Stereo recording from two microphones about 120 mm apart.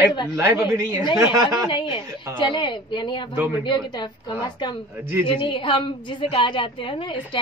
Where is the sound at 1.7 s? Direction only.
45° left (ahead or behind).